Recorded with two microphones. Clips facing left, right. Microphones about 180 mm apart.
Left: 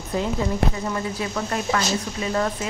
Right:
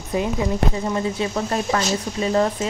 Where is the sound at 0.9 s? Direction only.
25° right (ahead or behind).